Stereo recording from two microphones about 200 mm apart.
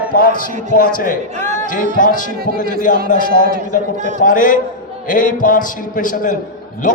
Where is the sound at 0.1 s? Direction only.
45° left (ahead or behind).